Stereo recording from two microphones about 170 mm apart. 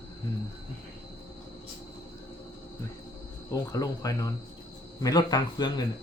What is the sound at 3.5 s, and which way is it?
Speech, 20° left (ahead or behind).